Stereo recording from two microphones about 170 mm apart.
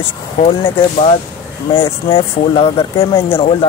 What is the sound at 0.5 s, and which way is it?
Speech, 30° left (ahead or behind).